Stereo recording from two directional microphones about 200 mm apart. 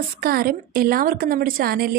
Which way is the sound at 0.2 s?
50° right (ahead or behind).